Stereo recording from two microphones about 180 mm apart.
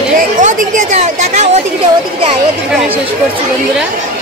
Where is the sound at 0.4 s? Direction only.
45° right (ahead or behind).